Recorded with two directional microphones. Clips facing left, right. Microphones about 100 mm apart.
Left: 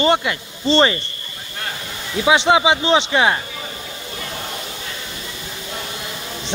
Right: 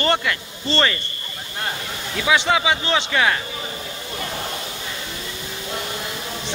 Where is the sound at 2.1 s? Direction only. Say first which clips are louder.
Left 4 dB; 25° left (ahead or behind).